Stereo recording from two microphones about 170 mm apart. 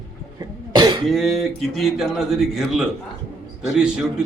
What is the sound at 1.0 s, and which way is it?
Speech, centre (ahead or behind).